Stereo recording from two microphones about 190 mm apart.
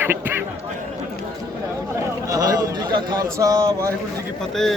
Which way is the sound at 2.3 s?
20° right (ahead or behind).